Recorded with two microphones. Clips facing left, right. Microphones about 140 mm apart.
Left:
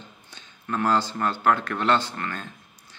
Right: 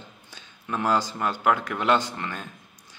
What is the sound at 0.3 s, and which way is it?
A man's voice, 10° right (ahead or behind).